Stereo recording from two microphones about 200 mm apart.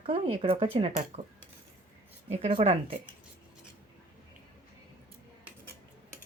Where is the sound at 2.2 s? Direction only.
30° right (ahead or behind).